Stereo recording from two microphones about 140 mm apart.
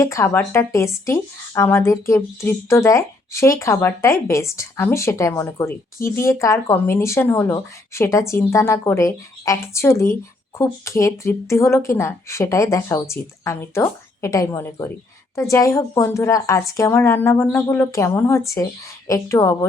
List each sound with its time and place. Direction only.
0.0 s speech: 20° left (ahead or behind)